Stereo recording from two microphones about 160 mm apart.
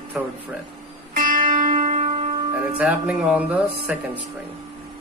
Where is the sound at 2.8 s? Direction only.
10° right (ahead or behind).